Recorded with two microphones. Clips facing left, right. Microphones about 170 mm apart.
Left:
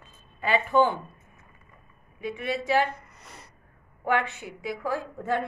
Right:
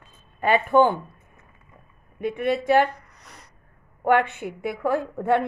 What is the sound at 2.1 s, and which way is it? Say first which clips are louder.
Speech: right 6 dB; 55° right (ahead or behind).